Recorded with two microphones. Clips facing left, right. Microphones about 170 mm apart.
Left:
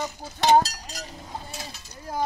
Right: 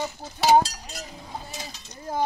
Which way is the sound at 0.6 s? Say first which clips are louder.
Even; 40° left (ahead or behind).